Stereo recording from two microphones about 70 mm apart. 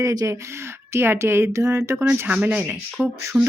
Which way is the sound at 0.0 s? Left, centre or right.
Right.